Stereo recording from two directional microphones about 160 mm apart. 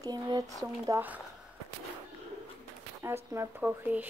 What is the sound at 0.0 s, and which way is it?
Speech, 25° right (ahead or behind).